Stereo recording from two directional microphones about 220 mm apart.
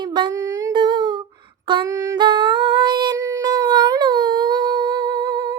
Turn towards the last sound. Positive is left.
turn(degrees=-20)  # may be behind; listen again after turning